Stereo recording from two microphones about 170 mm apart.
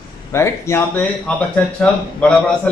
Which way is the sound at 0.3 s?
15° left (ahead or behind).